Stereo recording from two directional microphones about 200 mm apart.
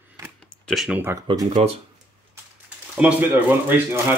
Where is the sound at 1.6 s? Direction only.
30° right (ahead or behind).